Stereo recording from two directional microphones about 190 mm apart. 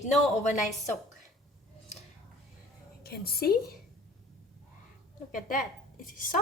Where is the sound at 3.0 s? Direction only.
55° left (ahead or behind).